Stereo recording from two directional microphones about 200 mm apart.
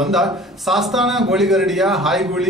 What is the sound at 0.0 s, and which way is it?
A man's voice, centre (ahead or behind).